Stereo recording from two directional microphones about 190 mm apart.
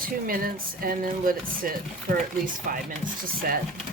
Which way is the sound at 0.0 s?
50° right (ahead or behind).